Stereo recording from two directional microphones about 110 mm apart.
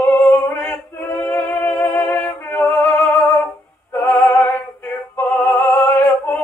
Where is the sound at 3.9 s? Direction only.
15° left (ahead or behind).